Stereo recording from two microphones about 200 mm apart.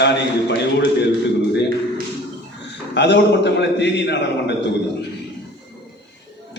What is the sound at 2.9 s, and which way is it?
A man's voice, 60° left (ahead or behind).